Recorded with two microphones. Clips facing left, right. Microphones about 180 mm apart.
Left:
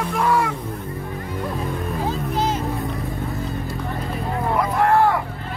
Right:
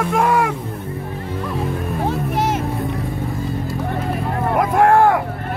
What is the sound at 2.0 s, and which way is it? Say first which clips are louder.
Music: right 3 dB; 60° right (ahead or behind).